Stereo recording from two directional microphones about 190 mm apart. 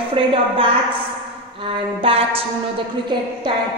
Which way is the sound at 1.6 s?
30° right (ahead or behind).